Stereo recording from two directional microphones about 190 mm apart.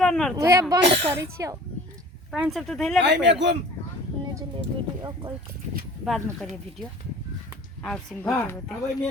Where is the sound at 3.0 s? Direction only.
65° right (ahead or behind).